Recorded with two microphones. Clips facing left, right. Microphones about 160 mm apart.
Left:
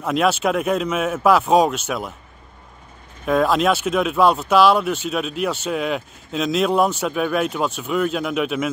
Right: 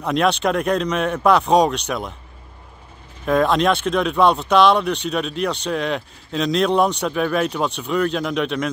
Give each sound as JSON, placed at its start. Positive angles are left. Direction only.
{"t": 0.0, "sound": "speech", "side_deg": 5}
{"t": 3.3, "sound": "speech", "side_deg": 0}